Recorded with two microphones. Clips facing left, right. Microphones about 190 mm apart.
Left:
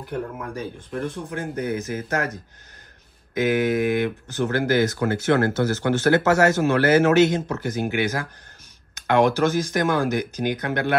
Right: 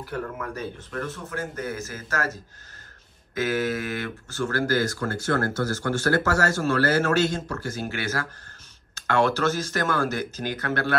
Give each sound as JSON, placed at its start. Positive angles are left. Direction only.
{"t": 0.4, "sound": "speech", "side_deg": 10}